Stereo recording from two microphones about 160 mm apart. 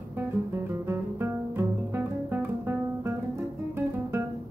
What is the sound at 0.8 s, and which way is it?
Music, 15° right (ahead or behind).